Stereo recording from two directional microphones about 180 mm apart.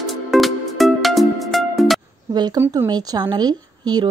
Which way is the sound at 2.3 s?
25° right (ahead or behind).